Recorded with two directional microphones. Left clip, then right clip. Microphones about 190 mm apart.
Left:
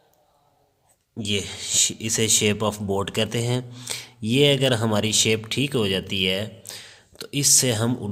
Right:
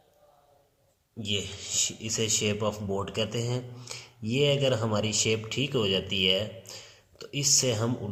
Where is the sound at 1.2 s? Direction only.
45° left (ahead or behind).